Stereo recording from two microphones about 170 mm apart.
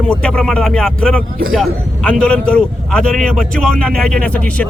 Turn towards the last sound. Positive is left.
turn(degrees=10)  # may be behind; listen again after turning